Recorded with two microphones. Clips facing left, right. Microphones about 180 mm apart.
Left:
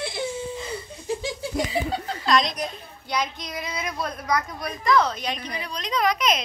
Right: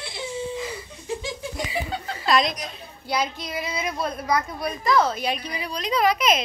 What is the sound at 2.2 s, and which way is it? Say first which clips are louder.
A woman's voice: right 1 dB; 5° right (ahead or behind).